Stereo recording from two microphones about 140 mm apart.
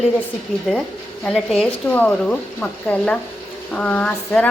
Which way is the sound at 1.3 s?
Centre (ahead or behind).